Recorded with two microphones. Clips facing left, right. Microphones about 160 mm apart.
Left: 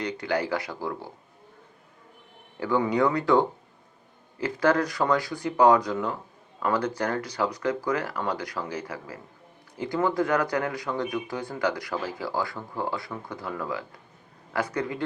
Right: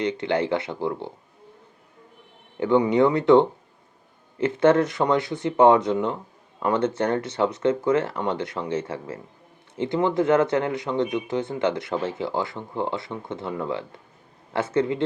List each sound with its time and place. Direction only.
0.0 s speech: 25° right (ahead or behind)
2.6 s speech: 20° right (ahead or behind)